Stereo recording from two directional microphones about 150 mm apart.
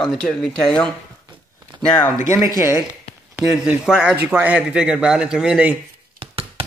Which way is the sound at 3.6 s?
5° right (ahead or behind).